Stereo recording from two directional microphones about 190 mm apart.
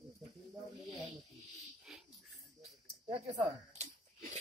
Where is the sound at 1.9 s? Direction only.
Centre (ahead or behind).